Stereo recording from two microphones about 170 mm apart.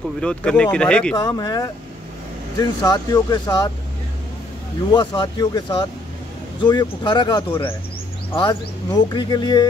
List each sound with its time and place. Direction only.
0.2 s speech: 5° left (ahead or behind)
1.1 s speech: 25° left (ahead or behind)
4.9 s speech: 25° left (ahead or behind)